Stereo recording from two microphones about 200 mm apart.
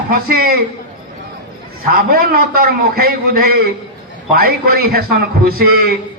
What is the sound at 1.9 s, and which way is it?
A man's voice, 45° right (ahead or behind).